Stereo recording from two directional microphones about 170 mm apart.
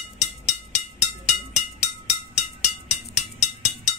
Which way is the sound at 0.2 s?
40° left (ahead or behind).